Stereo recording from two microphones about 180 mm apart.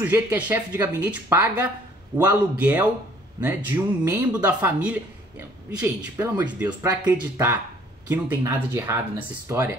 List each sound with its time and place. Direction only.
0.0 s speech: 10° right (ahead or behind)